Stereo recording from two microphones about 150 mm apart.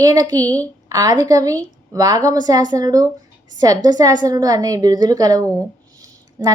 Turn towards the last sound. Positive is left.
turn(degrees=-20)  # may be behind; listen again after turning